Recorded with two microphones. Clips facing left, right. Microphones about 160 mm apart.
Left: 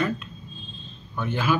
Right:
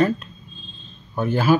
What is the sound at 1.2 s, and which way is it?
Speech, 40° right (ahead or behind).